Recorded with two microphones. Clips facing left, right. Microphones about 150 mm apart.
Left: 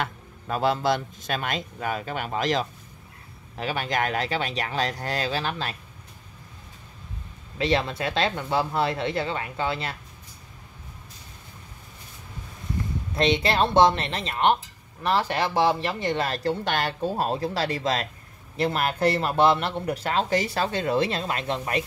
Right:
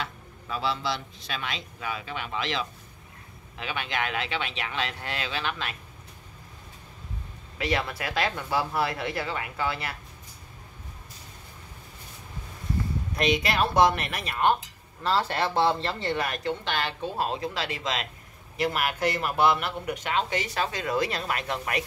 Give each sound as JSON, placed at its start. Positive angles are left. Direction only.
{"t": 0.0, "sound": "speech", "side_deg": 50}
{"t": 7.5, "sound": "speech", "side_deg": 25}
{"t": 13.2, "sound": "speech", "side_deg": 30}
{"t": 16.3, "sound": "speech", "side_deg": 35}
{"t": 16.6, "sound": "speech", "side_deg": 45}